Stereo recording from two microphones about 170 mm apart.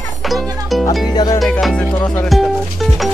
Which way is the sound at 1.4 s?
Centre (ahead or behind).